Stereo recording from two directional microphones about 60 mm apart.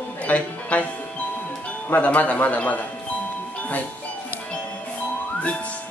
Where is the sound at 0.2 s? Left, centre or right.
Left.